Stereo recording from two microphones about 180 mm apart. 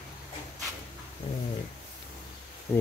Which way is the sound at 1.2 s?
30° left (ahead or behind).